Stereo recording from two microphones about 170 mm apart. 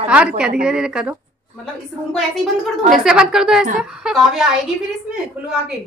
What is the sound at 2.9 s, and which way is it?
A woman's voice, 5° right (ahead or behind).